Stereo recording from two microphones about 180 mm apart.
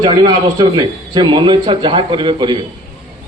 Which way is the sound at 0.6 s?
25° right (ahead or behind).